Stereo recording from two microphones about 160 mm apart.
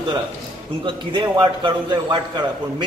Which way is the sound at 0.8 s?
30° right (ahead or behind).